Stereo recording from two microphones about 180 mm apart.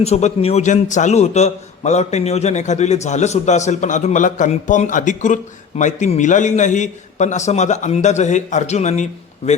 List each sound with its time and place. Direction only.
0.0 s a man's voice: 35° left (ahead or behind)